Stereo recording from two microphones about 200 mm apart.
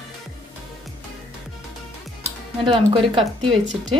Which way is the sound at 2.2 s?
25° right (ahead or behind).